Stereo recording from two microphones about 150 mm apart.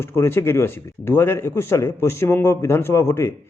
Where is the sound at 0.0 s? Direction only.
15° left (ahead or behind).